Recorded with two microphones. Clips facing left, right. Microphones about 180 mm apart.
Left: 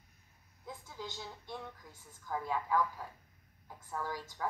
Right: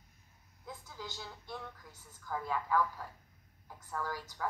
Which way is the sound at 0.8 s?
25° left (ahead or behind).